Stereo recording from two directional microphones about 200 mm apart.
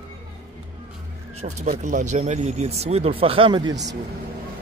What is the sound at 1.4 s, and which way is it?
Speech, 35° right (ahead or behind).